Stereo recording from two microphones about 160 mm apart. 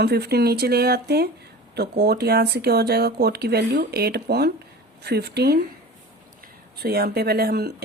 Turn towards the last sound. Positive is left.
turn(degrees=-85)